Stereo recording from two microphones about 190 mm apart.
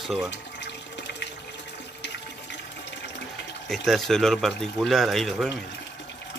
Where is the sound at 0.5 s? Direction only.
65° left (ahead or behind).